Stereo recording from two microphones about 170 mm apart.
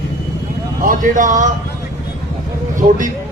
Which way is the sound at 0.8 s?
50° right (ahead or behind).